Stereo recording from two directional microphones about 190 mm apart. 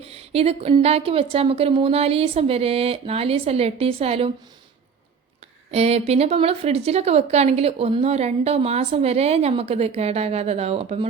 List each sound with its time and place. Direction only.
0.0 s a woman's voice: 30° right (ahead or behind)
5.7 s a woman's voice: 35° right (ahead or behind)